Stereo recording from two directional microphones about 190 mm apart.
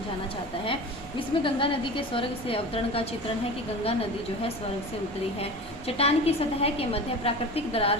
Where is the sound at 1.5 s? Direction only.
25° left (ahead or behind).